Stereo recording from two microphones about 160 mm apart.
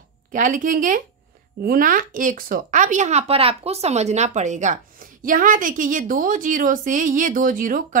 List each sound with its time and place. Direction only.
0.3 s speech: 55° right (ahead or behind)